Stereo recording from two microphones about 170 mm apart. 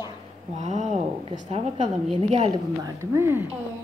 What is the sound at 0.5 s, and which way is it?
A woman's voice, 45° right (ahead or behind).